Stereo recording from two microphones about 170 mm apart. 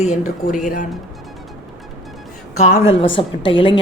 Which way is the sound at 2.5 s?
40° left (ahead or behind).